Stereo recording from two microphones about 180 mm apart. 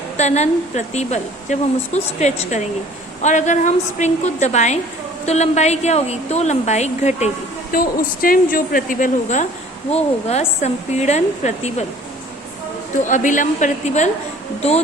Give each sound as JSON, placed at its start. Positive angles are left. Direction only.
{"t": 0.2, "sound": "a woman's voice", "side_deg": 40}
{"t": 7.7, "sound": "a woman's voice", "side_deg": 50}
{"t": 13.0, "sound": "a woman's voice", "side_deg": 45}